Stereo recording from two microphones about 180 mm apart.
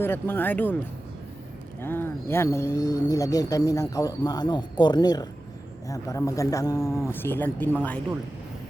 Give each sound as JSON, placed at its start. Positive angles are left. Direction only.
{"t": 0.0, "sound": "speech", "side_deg": 10}
{"t": 1.8, "sound": "speech", "side_deg": 10}